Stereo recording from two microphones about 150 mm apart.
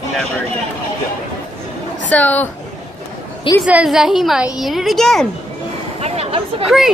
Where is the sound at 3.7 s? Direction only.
5° right (ahead or behind).